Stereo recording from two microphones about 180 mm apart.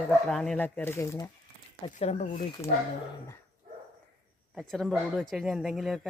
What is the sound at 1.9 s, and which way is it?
Speech, 40° left (ahead or behind).